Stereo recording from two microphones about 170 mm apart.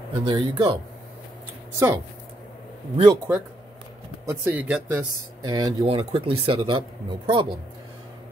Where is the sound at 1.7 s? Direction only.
15° right (ahead or behind).